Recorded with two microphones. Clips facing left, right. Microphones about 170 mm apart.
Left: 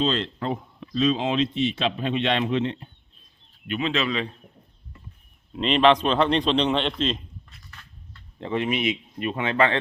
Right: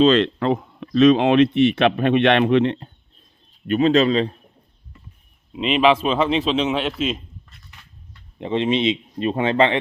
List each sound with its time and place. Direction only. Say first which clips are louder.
0.0 s speech: right 10 dB; 80° right; by 2.9 s 65° right (ahead or behind)
3.7 s a man's voice: right 10 dB; 40° right (ahead or behind)
5.5 s a man's voice: right 2 dB; 5° right (ahead or behind)
8.4 s speech: right 5 dB; 20° right (ahead or behind)